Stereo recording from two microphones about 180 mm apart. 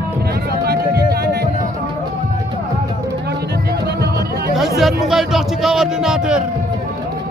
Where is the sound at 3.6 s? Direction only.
65° right (ahead or behind).